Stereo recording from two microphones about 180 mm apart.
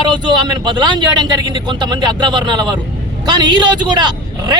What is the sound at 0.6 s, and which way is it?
A man's voice, 25° right (ahead or behind).